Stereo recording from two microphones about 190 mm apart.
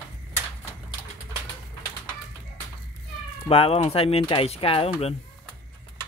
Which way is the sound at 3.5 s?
30° left (ahead or behind).